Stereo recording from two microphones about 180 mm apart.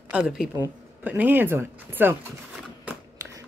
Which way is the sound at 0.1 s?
5° right (ahead or behind).